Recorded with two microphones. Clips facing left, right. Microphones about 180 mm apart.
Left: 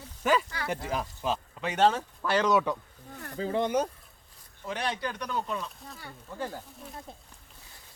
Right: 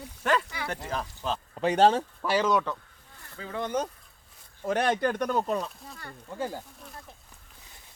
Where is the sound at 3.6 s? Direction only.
10° left (ahead or behind).